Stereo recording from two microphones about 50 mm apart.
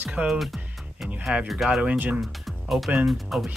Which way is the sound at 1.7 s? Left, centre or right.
Right.